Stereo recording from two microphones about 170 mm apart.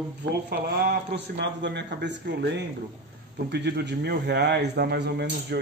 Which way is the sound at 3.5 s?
75° right (ahead or behind).